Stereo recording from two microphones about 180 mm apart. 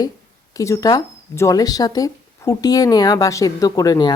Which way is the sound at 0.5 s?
20° left (ahead or behind).